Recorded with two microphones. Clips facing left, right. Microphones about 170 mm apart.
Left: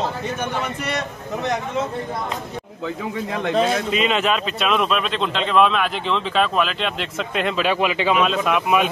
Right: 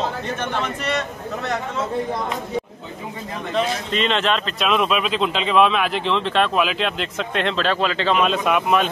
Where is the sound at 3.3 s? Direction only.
70° left (ahead or behind).